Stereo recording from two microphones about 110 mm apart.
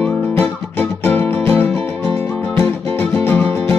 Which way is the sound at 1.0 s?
20° left (ahead or behind).